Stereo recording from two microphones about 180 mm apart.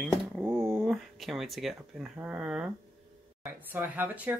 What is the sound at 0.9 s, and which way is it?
Speech, centre (ahead or behind).